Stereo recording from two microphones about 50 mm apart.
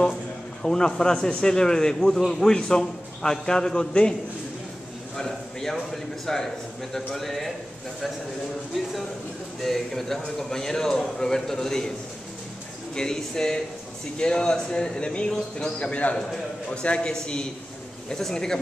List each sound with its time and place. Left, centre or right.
0.0 s speech: centre
5.1 s speech: centre
9.6 s a man's voice: centre
12.9 s speech: centre
15.9 s a man's voice: left